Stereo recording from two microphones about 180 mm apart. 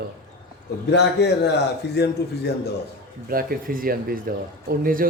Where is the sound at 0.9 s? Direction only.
70° left (ahead or behind).